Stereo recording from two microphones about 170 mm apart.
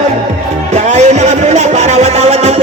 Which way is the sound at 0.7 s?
45° right (ahead or behind).